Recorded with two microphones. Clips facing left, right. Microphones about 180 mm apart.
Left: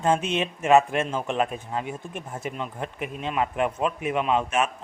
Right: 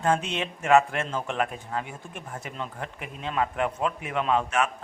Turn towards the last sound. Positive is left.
turn(degrees=20)  # may be behind; listen again after turning